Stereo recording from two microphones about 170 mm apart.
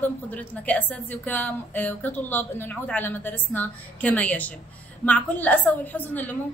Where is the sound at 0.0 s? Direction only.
10° left (ahead or behind).